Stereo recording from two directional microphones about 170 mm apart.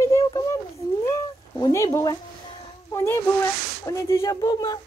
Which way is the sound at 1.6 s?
20° left (ahead or behind).